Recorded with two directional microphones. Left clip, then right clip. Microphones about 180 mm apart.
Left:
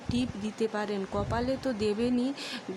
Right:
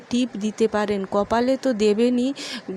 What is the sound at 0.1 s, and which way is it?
Speech, 25° right (ahead or behind).